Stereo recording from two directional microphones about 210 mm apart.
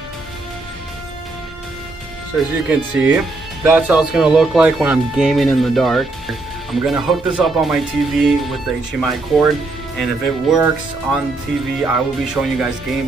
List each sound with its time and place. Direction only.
2.3 s speech: 5° right (ahead or behind)
11.8 s speech: 5° right (ahead or behind)